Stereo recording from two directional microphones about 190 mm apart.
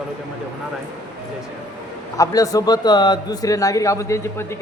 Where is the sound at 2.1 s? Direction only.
15° left (ahead or behind).